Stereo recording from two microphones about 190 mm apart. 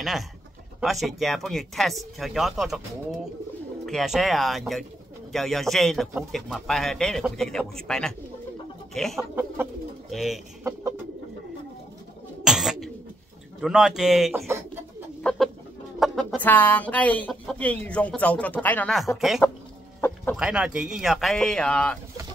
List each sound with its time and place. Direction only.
0.7 s speech: centre (ahead or behind)
3.8 s speech: centre (ahead or behind)
9.3 s speech: 10° right (ahead or behind)
10.6 s bird: 15° right (ahead or behind)
12.4 s bird: centre (ahead or behind)
13.6 s speech: 5° right (ahead or behind)
15.2 s chicken: centre (ahead or behind)
16.0 s speech: centre (ahead or behind)
20.0 s chicken: 10° left (ahead or behind)
20.3 s speech: 5° right (ahead or behind)